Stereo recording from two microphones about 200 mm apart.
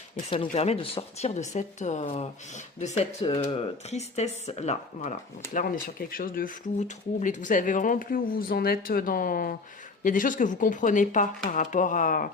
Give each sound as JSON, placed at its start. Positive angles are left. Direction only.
{"t": 0.4, "sound": "speech", "side_deg": 30}
{"t": 5.5, "sound": "speech", "side_deg": 45}